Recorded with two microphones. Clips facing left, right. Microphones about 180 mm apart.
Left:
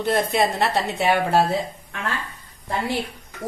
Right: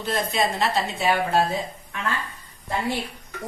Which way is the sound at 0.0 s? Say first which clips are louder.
Left 4 dB; 60° left (ahead or behind).